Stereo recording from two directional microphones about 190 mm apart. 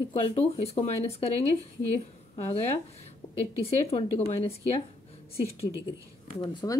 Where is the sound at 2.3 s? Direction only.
30° left (ahead or behind).